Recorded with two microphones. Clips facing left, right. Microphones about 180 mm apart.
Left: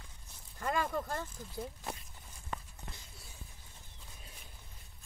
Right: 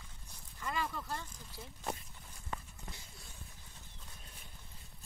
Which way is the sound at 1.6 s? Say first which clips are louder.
Left 10 dB; 55° left (ahead or behind).